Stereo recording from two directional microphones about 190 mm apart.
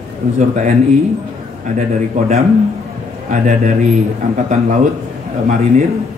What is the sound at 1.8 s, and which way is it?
Speech, 40° right (ahead or behind).